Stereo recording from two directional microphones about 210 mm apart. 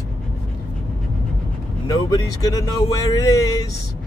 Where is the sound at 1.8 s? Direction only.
20° left (ahead or behind).